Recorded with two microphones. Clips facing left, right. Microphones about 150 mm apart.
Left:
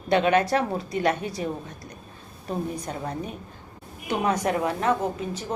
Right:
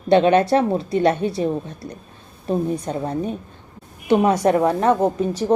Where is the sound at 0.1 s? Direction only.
25° right (ahead or behind).